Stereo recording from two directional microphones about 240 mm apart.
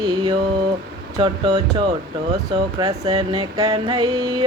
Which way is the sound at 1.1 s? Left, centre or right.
Centre.